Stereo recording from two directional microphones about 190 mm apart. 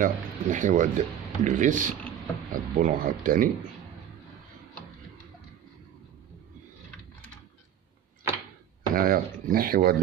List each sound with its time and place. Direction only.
0.0 s speech: 45° right (ahead or behind)
8.9 s speech: 50° right (ahead or behind)